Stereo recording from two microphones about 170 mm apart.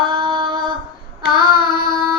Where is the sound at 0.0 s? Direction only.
25° right (ahead or behind).